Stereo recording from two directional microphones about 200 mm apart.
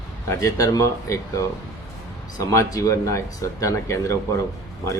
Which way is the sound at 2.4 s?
15° left (ahead or behind).